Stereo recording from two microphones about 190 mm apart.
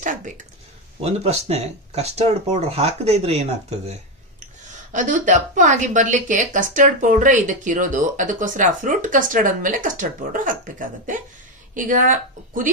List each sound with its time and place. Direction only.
0.0 s a sound: 40° right (ahead or behind)
1.0 s speech: 35° right (ahead or behind)
4.9 s a woman's voice: 40° right (ahead or behind)